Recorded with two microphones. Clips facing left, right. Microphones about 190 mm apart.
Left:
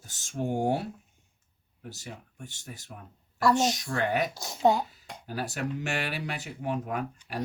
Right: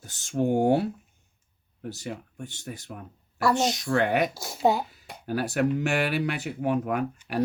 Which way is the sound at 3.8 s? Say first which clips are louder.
Right 5 dB; 60° right (ahead or behind).